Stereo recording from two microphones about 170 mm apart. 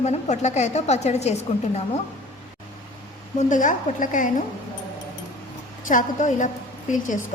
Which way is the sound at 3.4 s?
45° left (ahead or behind).